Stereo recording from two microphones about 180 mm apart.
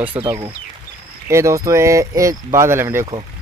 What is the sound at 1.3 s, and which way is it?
Speech, 15° right (ahead or behind).